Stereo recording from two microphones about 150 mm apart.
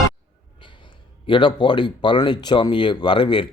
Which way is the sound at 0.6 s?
30° left (ahead or behind).